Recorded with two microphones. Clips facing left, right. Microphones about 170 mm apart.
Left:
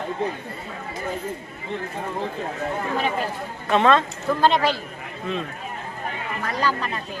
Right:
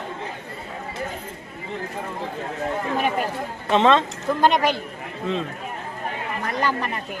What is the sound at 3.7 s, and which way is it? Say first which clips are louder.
A man's voice: right 1 dB; 20° right (ahead or behind).